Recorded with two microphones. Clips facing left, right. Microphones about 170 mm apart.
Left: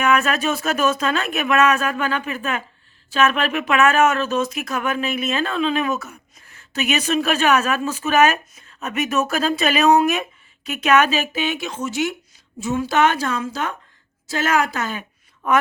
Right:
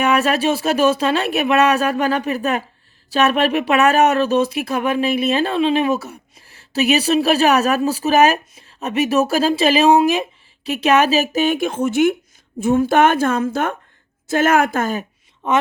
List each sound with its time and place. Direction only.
0.0 s a woman's voice: 35° right (ahead or behind)
15.4 s a woman's voice: 25° right (ahead or behind)